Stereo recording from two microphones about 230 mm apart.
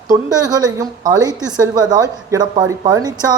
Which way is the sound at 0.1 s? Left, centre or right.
Centre.